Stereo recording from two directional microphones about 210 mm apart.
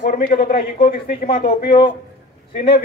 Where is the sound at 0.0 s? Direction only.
40° left (ahead or behind).